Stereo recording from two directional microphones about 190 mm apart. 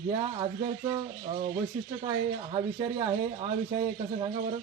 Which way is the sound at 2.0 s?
20° right (ahead or behind).